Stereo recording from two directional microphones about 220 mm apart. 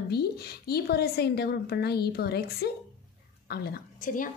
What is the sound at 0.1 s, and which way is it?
A woman's voice, 45° left (ahead or behind).